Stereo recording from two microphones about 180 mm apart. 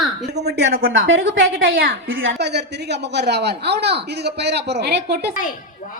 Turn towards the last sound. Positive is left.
turn(degrees=-65)  # may be behind; listen again after turning